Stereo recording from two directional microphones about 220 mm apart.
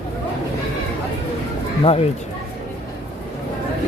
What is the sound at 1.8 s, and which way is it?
Speech, 25° left (ahead or behind).